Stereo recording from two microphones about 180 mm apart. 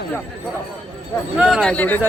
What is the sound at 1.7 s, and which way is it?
Speech, 10° left (ahead or behind).